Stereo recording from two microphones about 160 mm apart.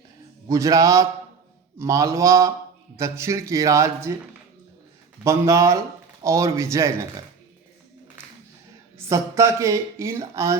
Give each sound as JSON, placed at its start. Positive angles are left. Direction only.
{"t": 0.4, "sound": "speech", "side_deg": -20}
{"t": 5.2, "sound": "speech", "side_deg": -20}
{"t": 9.0, "sound": "speech", "side_deg": -20}